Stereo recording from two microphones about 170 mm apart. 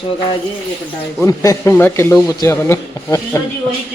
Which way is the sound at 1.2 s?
20° left (ahead or behind).